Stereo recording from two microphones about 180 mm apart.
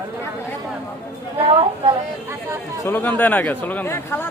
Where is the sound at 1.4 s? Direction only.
30° right (ahead or behind).